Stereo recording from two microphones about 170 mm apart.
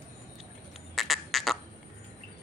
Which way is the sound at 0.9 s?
Centre (ahead or behind).